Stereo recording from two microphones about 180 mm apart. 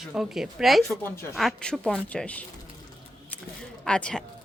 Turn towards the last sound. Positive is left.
turn(degrees=5)  # may be behind; listen again after turning